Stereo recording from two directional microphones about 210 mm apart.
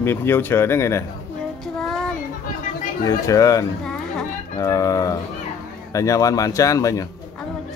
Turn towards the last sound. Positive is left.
turn(degrees=15)  # may be behind; listen again after turning